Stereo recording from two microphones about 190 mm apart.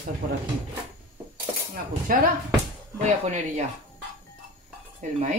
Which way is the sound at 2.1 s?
45° right (ahead or behind).